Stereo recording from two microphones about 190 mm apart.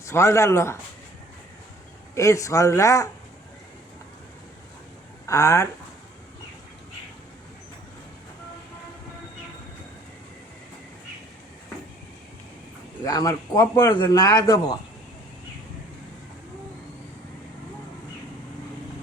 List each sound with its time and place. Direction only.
0.0 s speech: 15° left (ahead or behind)
2.1 s speech: 15° left (ahead or behind)
5.2 s speech: 15° left (ahead or behind)
13.1 s speech: 20° left (ahead or behind)